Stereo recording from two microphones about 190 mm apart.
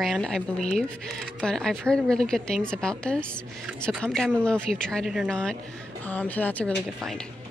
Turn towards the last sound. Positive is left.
turn(degrees=0)  # may be behind; listen again after turning